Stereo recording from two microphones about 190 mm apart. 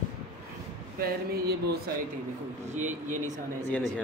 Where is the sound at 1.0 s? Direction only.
55° right (ahead or behind).